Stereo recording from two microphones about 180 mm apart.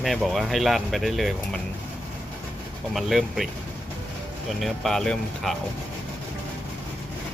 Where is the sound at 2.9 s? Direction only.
Centre (ahead or behind).